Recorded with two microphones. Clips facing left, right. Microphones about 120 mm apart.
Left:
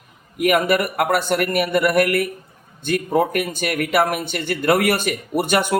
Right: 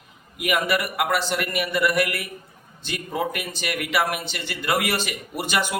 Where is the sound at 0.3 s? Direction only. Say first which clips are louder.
Left 6 dB; 50° left (ahead or behind).